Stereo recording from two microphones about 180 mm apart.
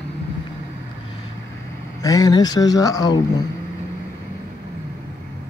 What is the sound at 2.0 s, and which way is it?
Speech, 20° left (ahead or behind).